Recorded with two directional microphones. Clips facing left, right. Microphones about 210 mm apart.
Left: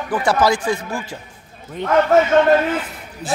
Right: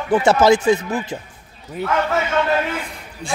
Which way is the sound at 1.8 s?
5° right (ahead or behind).